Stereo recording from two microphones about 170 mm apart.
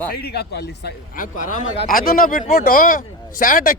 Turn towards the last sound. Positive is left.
turn(degrees=55)  # may be behind; listen again after turning